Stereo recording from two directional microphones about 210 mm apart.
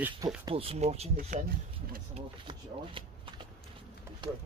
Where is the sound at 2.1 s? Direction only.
25° right (ahead or behind).